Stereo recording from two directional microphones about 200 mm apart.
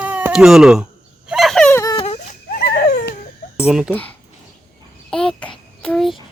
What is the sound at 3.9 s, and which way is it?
Speech, 10° left (ahead or behind).